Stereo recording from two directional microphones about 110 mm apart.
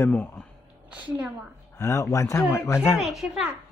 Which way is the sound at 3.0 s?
Centre (ahead or behind).